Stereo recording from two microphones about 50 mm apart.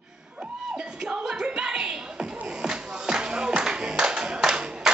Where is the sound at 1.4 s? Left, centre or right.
Centre.